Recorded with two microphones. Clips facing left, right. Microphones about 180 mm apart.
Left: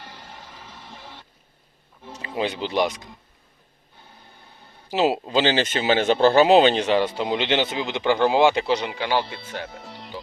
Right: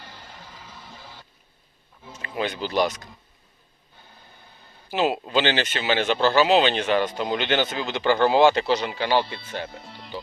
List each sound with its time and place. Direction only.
2.2 s speech: 25° left (ahead or behind)
5.1 s speech: 30° left (ahead or behind); by 9.6 s 10° left (ahead or behind)